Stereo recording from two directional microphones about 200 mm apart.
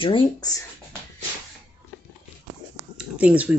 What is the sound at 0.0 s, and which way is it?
Speech, 20° left (ahead or behind).